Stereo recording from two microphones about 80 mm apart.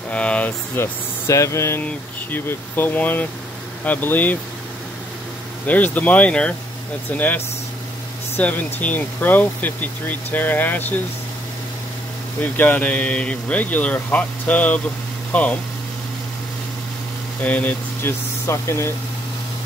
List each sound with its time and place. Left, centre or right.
0.1 s speech: centre
0.7 s speech: left
1.8 s speech: left
5.7 s speech: centre
12.4 s speech: left
17.4 s speech: centre
18.5 s speech: left